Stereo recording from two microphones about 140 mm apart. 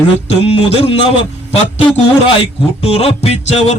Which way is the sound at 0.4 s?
45° left (ahead or behind).